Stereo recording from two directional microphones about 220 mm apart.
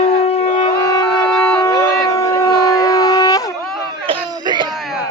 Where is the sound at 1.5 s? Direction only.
15° left (ahead or behind).